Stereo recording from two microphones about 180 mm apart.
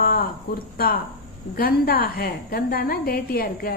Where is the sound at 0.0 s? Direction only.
55° left (ahead or behind).